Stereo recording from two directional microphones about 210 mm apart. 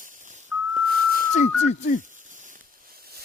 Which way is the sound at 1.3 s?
35° left (ahead or behind).